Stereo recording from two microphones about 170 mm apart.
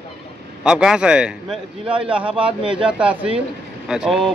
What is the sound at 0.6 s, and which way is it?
A man's voice, 5° right (ahead or behind).